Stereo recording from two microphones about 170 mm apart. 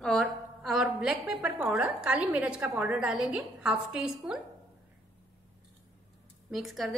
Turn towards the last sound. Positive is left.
turn(degrees=0)  # may be behind; listen again after turning